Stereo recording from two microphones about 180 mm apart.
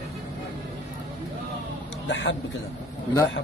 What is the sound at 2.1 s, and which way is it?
Speech, 90° left.